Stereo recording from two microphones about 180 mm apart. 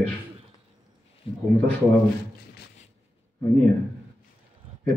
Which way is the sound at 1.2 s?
30° left (ahead or behind).